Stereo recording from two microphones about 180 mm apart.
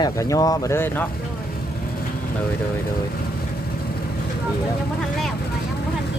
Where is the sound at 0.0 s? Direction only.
20° left (ahead or behind).